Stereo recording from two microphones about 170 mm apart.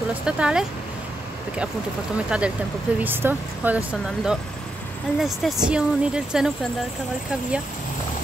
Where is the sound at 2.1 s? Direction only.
5° right (ahead or behind).